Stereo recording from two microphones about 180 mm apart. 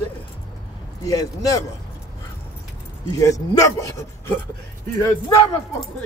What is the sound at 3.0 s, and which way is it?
Speech, 20° left (ahead or behind).